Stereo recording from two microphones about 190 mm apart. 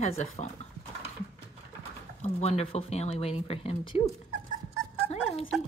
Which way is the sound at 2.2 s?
35° left (ahead or behind).